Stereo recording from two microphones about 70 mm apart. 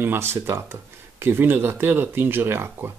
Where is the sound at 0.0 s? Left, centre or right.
Right.